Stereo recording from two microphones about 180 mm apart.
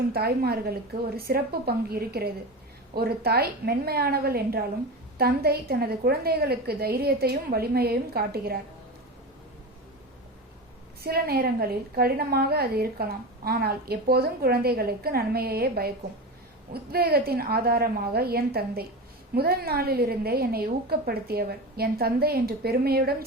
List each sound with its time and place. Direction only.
0.1 s a woman's voice: 60° right (ahead or behind)
11.0 s a woman's voice: 60° right (ahead or behind)